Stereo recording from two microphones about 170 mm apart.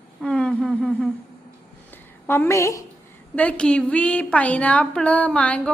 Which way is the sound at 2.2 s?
10° left (ahead or behind).